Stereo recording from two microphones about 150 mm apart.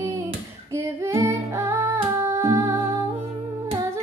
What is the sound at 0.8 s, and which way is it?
Female singing, 20° right (ahead or behind).